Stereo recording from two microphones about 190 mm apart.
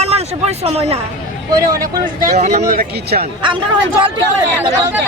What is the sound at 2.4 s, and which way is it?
Speech, 40° right (ahead or behind).